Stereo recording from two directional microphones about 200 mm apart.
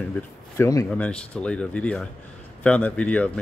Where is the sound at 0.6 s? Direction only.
15° left (ahead or behind).